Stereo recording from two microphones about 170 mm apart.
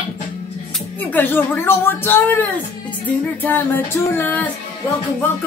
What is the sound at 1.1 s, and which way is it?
Speech, 10° left (ahead or behind).